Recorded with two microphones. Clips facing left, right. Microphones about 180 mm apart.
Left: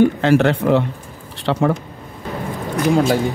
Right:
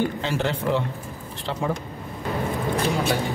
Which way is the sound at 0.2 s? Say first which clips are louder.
Left 11 dB; 65° left (ahead or behind).